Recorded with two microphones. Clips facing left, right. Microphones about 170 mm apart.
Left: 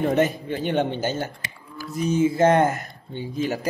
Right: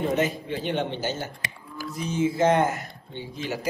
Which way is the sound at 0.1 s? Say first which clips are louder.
Left 4 dB; 55° left (ahead or behind).